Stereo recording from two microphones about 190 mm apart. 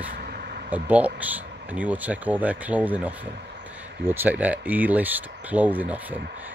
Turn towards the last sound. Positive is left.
turn(degrees=-10)  # may be behind; listen again after turning